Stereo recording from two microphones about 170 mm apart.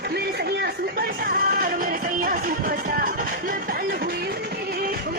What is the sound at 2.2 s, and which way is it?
Music, 55° right (ahead or behind).